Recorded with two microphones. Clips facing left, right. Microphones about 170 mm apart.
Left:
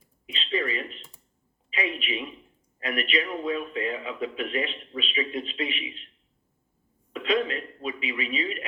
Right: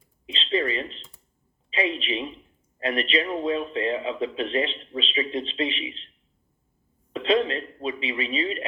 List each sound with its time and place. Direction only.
0.3 s a sound: 30° right (ahead or behind)
1.7 s a man's voice: 30° right (ahead or behind)
7.1 s a man's voice: 30° right (ahead or behind)